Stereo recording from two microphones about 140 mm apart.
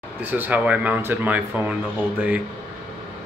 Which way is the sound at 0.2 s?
15° right (ahead or behind).